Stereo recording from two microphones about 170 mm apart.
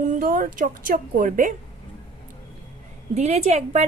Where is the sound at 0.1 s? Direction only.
50° right (ahead or behind).